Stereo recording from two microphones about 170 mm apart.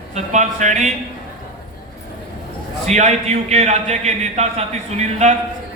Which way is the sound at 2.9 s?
40° right (ahead or behind).